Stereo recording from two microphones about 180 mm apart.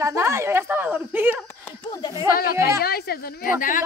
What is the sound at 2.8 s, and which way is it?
Speech, 60° left (ahead or behind).